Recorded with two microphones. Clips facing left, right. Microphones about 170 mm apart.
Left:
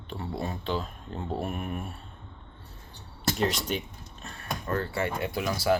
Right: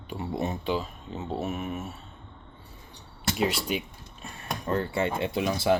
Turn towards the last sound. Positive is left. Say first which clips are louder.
# right 2 dB
turn(degrees=-20)  # may be behind; listen again after turning